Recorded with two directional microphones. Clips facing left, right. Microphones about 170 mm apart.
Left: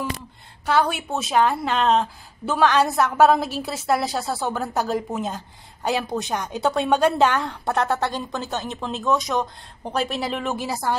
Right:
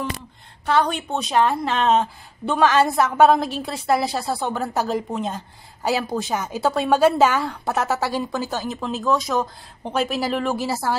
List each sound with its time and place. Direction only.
0.7 s a woman's voice: 5° left (ahead or behind)